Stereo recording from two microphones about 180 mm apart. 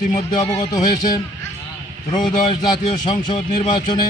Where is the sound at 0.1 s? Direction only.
20° left (ahead or behind).